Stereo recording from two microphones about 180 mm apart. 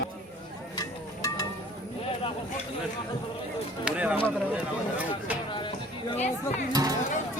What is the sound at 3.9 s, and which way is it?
A man's voice, 5° right (ahead or behind).